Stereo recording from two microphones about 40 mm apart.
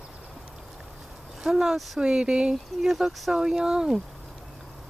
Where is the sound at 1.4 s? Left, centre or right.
Centre.